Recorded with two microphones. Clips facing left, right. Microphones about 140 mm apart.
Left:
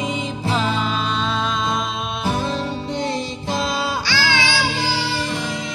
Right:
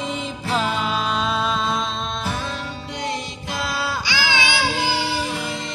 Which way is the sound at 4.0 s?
20° right (ahead or behind).